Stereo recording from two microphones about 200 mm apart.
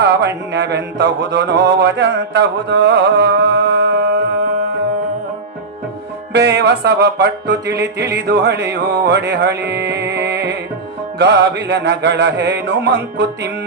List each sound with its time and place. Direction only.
0.0 s music: 60° right (ahead or behind)
0.5 s mantra: 55° right (ahead or behind)
6.3 s mantra: 55° right (ahead or behind)
9.6 s music: 55° right (ahead or behind)
11.2 s mantra: 60° right (ahead or behind)